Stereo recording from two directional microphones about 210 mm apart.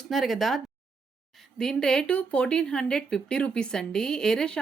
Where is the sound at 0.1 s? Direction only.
Centre (ahead or behind).